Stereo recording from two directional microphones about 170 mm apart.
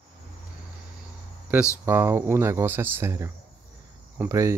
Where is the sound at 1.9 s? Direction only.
15° right (ahead or behind).